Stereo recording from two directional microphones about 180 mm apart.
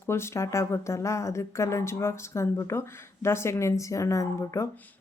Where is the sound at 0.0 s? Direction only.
15° left (ahead or behind).